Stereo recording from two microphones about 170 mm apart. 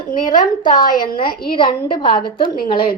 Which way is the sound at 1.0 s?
30° left (ahead or behind).